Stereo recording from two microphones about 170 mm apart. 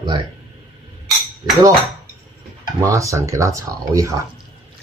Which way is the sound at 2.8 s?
20° right (ahead or behind).